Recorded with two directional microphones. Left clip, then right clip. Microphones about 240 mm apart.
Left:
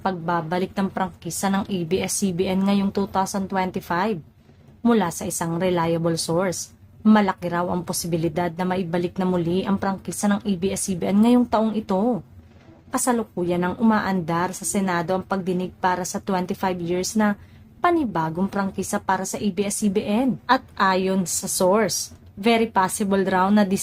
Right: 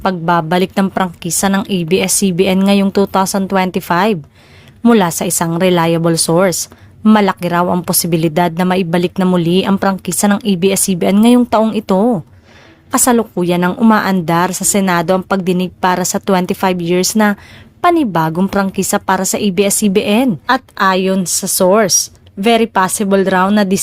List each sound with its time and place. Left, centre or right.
0.0 s a woman's voice: right